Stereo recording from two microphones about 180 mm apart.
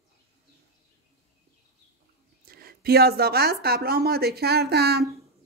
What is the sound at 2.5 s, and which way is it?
Speech, 55° right (ahead or behind).